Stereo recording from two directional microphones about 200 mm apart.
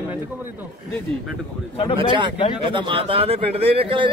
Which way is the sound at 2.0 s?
25° right (ahead or behind).